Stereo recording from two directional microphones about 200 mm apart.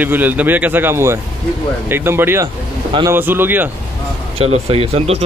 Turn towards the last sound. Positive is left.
turn(degrees=-30)  # may be behind; listen again after turning